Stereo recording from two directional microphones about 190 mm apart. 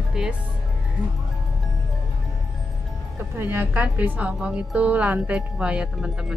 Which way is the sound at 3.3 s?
10° right (ahead or behind).